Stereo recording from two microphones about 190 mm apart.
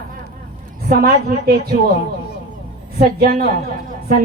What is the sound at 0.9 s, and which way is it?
Speech, 55° right (ahead or behind).